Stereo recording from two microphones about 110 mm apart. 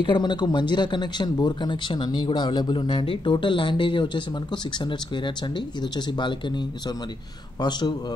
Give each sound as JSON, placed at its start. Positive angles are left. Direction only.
{"t": 0.0, "sound": "speech", "side_deg": 45}